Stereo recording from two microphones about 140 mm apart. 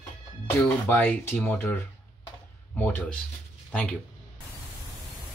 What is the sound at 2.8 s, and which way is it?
Speech, 10° left (ahead or behind).